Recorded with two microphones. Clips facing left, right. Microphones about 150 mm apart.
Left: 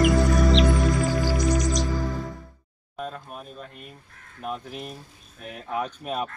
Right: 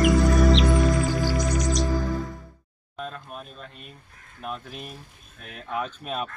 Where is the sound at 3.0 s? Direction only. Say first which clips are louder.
Left 1 dB; 15° left (ahead or behind).